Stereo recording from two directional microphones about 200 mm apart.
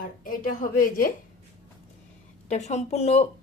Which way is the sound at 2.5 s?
35° left (ahead or behind).